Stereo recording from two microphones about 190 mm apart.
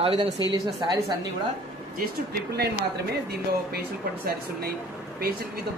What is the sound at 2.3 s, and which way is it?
Speech, 60° right (ahead or behind).